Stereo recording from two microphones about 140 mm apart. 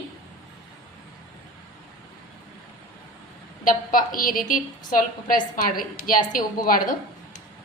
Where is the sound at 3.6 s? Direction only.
75° left (ahead or behind).